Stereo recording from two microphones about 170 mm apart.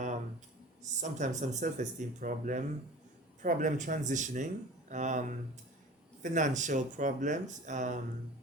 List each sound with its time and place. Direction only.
0.8 s speech: 45° right (ahead or behind)